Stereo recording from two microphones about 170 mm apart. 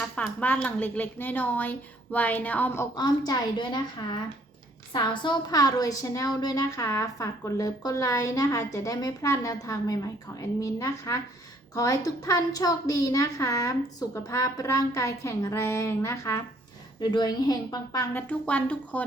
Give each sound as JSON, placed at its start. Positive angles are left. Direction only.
{"t": 0.2, "sound": "a woman's voice", "side_deg": 10}
{"t": 2.9, "sound": "a woman's voice", "side_deg": 25}
{"t": 4.9, "sound": "a woman's voice", "side_deg": 30}
{"t": 18.3, "sound": "a woman's voice", "side_deg": 10}